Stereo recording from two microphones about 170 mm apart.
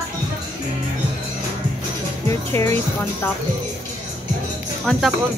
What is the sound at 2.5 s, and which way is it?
Speech, 15° left (ahead or behind).